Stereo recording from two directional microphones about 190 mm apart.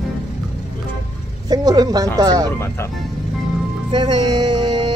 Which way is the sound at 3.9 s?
25° right (ahead or behind).